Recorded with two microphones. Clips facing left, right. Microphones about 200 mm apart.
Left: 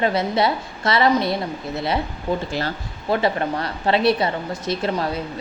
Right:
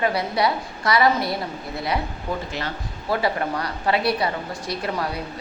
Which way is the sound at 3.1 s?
25° left (ahead or behind).